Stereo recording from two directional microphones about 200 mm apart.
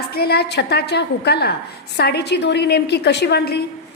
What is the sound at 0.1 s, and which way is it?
A woman's voice, 50° left (ahead or behind).